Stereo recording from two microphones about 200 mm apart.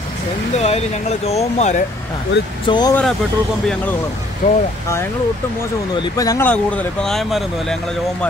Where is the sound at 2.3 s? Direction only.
60° left (ahead or behind).